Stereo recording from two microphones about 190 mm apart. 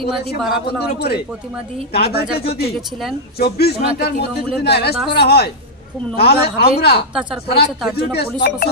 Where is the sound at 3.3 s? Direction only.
60° left (ahead or behind).